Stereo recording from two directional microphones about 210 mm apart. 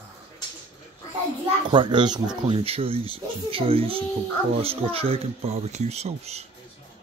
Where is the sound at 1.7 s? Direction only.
20° right (ahead or behind).